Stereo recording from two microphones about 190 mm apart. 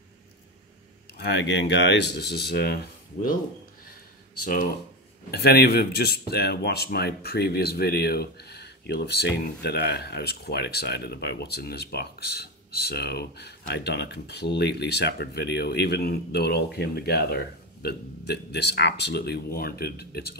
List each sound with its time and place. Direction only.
1.1 s speech: 60° left (ahead or behind)
5.3 s speech: 55° left (ahead or behind)